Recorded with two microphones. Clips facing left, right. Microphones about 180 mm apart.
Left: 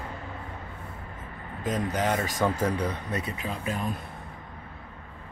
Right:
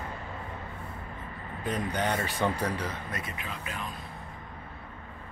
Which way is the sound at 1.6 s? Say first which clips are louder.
Left 3 dB; 90° left.